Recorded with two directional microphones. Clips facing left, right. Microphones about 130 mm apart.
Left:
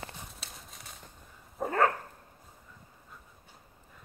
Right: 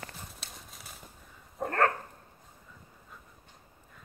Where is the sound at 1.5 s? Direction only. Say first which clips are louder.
Left 1 dB; 5° left (ahead or behind).